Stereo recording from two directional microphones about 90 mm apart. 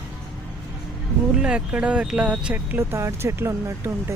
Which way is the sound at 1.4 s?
15° right (ahead or behind).